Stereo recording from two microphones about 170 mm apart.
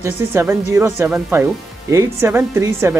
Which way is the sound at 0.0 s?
15° right (ahead or behind).